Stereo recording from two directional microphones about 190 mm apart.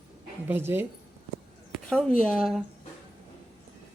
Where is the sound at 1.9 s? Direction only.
5° left (ahead or behind).